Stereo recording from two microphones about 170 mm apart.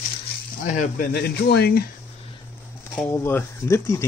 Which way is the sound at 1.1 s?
70° left (ahead or behind).